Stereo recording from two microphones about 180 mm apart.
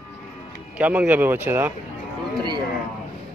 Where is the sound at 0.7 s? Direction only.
10° right (ahead or behind).